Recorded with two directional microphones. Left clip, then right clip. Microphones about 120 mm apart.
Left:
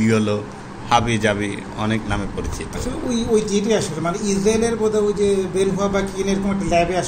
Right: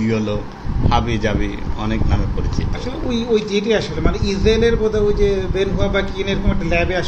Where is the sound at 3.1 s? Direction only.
60° left (ahead or behind).